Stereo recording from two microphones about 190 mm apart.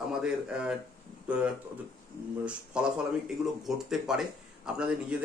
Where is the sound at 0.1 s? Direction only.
5° right (ahead or behind).